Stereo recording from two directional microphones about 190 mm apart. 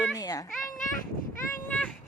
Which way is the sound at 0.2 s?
20° left (ahead or behind).